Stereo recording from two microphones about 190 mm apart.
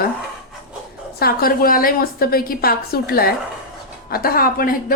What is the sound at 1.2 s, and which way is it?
A woman's voice, 50° left (ahead or behind).